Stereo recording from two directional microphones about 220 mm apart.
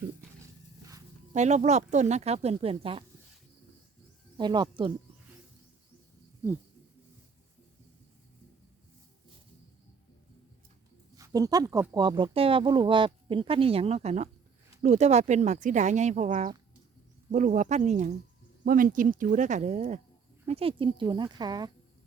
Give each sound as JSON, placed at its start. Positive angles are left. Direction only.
{"t": 1.3, "sound": "speech", "side_deg": -30}
{"t": 4.4, "sound": "speech", "side_deg": -20}
{"t": 11.2, "sound": "speech", "side_deg": -15}